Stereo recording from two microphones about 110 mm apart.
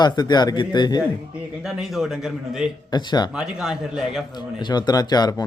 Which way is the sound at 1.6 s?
Centre (ahead or behind).